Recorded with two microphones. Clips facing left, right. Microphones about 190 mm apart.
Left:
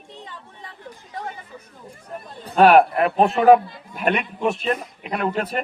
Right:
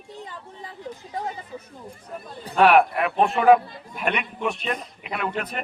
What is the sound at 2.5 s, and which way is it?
Speech, 35° left (ahead or behind).